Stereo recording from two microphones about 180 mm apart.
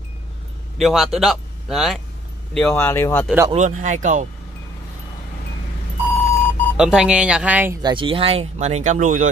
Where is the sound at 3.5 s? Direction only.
40° right (ahead or behind).